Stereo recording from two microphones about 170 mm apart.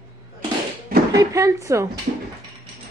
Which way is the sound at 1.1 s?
20° right (ahead or behind).